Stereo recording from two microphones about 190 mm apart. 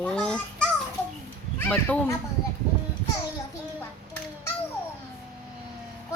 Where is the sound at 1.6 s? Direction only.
10° left (ahead or behind).